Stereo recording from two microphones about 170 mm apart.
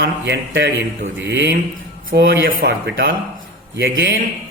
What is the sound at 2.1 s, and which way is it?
Speech, 65° right (ahead or behind).